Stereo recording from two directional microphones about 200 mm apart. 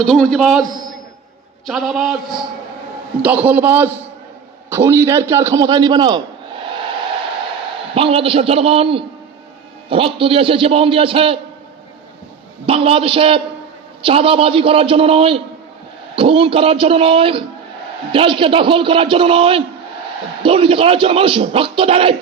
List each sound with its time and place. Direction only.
0.0 s a man's voice: 5° left (ahead or behind)
1.6 s a man's voice: centre (ahead or behind)
3.2 s a man's voice: 10° right (ahead or behind)
7.9 s a man's voice: 30° right (ahead or behind)
12.6 s a man's voice: 30° right (ahead or behind)